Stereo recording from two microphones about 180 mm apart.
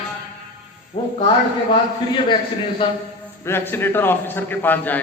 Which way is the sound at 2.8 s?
25° left (ahead or behind).